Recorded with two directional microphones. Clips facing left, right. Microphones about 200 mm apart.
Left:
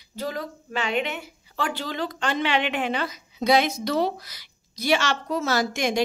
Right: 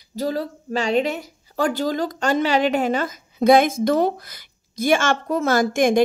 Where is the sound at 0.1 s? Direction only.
35° right (ahead or behind).